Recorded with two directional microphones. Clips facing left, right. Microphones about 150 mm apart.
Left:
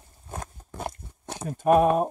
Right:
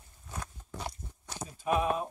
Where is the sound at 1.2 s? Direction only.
60° left (ahead or behind).